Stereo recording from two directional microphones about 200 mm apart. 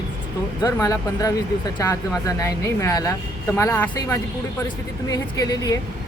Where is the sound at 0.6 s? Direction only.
15° left (ahead or behind).